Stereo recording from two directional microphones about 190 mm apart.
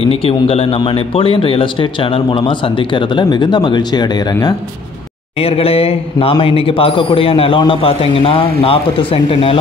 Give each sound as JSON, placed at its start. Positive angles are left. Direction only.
{"t": 0.0, "sound": "speech", "side_deg": 30}
{"t": 5.4, "sound": "speech", "side_deg": 30}